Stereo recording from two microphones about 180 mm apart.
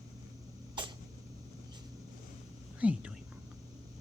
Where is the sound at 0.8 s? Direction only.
25° right (ahead or behind).